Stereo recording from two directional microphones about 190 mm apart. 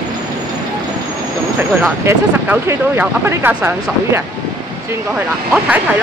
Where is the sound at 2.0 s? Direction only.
10° right (ahead or behind).